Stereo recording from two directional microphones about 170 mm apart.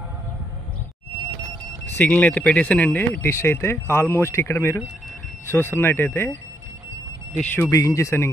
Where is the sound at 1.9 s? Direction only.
10° left (ahead or behind).